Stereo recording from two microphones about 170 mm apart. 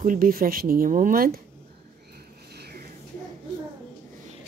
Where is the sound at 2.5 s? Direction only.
70° right (ahead or behind).